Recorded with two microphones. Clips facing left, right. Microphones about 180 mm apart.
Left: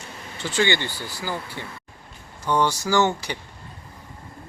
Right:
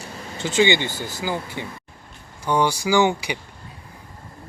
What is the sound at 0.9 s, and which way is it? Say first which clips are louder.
Speech: right 4 dB; 45° right (ahead or behind).